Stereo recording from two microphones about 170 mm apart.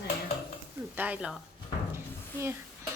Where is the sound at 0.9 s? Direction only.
10° right (ahead or behind).